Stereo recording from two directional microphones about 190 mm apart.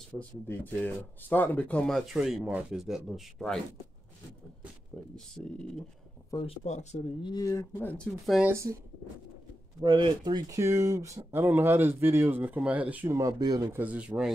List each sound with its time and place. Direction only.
0.2 s speech: 10° left (ahead or behind)
4.9 s speech: centre (ahead or behind)
6.3 s speech: 30° left (ahead or behind)
7.2 s speech: 20° left (ahead or behind)
8.4 s speech: 15° right (ahead or behind)
9.8 s speech: 25° right (ahead or behind); by 14.3 s 5° right (ahead or behind)